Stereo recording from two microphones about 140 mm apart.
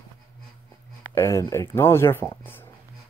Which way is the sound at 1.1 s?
20° left (ahead or behind).